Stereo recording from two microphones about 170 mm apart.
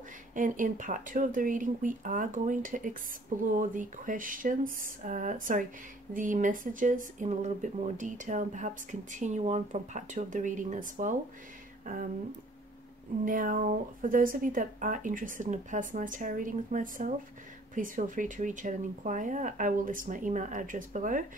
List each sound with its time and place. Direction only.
0.3 s speech: 50° right (ahead or behind)
11.8 s a sound: 50° right (ahead or behind)
13.2 s speech: 50° right (ahead or behind)